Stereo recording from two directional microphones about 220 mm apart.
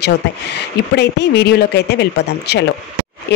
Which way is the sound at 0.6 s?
50° left (ahead or behind).